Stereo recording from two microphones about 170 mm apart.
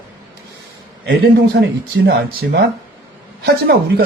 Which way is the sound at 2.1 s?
75° right (ahead or behind).